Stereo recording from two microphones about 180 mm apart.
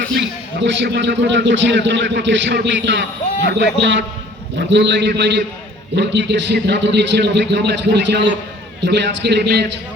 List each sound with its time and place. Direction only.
0.1 s a man's voice: 85° right; by 9.6 s 65° right (ahead or behind)